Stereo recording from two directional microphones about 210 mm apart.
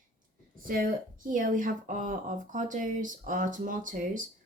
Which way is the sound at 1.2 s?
40° right (ahead or behind).